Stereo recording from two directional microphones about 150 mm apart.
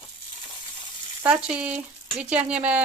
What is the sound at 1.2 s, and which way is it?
Speech, 5° right (ahead or behind).